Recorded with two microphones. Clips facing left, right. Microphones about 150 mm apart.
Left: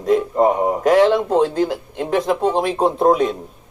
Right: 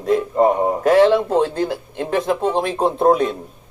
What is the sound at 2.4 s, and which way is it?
Speech, 10° left (ahead or behind).